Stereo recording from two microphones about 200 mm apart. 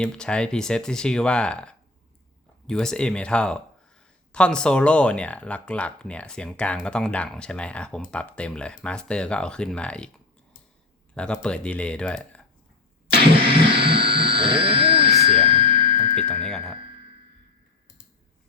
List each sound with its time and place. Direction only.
0.0 s speech: 5° left (ahead or behind)
11.1 s speech: 5° left (ahead or behind)
13.4 s a sound: 25° right (ahead or behind)